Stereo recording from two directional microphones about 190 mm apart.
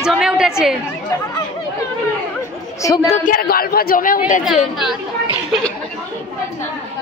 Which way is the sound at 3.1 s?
45° left (ahead or behind).